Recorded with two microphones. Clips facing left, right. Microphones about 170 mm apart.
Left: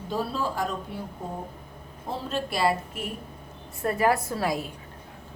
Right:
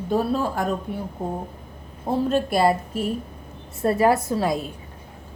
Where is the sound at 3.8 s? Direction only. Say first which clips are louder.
Right 5 dB; 25° right (ahead or behind).